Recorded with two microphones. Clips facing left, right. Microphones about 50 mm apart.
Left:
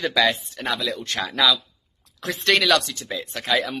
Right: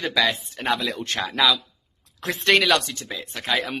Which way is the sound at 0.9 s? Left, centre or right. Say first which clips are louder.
Even; right.